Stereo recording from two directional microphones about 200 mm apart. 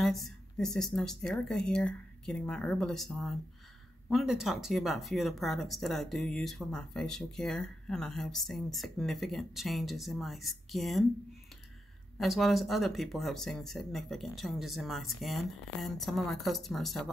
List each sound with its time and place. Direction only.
0.0 s speech: centre (ahead or behind)
12.2 s speech: centre (ahead or behind)